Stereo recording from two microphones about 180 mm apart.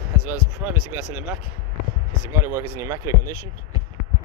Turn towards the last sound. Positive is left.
turn(degrees=-15)  # may be behind; listen again after turning